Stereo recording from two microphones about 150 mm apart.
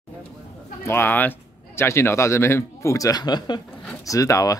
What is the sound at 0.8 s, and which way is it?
Speech, 15° left (ahead or behind).